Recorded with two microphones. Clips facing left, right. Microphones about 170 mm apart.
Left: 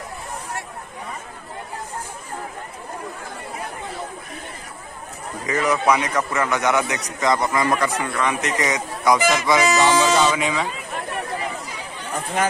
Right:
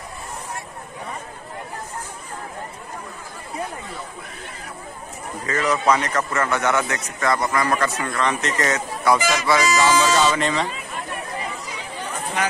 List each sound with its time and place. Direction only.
5.5 s a man's voice: 10° left (ahead or behind)